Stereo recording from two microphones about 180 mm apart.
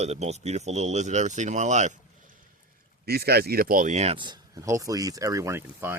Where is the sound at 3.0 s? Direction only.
60° right (ahead or behind).